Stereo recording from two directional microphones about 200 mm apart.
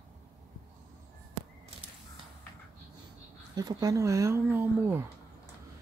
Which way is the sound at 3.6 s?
20° right (ahead or behind).